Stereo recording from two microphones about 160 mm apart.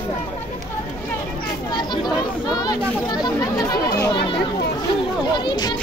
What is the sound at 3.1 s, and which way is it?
Speech, 25° left (ahead or behind).